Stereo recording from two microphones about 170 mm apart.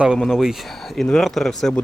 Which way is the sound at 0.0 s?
5° right (ahead or behind).